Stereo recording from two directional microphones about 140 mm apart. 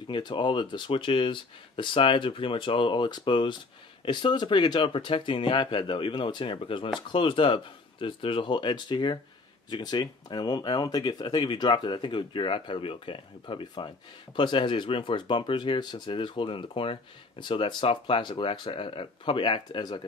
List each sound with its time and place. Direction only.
0.1 s speech: 35° left (ahead or behind)